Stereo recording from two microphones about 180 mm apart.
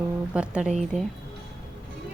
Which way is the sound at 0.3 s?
5° right (ahead or behind).